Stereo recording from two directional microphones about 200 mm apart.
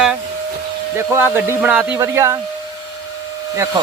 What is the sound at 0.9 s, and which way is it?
Speech, 15° right (ahead or behind).